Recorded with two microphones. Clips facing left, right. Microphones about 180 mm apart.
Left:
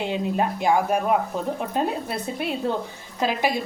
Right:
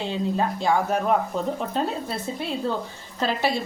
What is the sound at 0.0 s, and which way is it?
A woman's voice, 15° left (ahead or behind).